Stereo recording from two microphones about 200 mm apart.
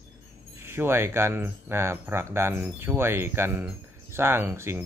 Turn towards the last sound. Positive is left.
turn(degrees=-10)  # may be behind; listen again after turning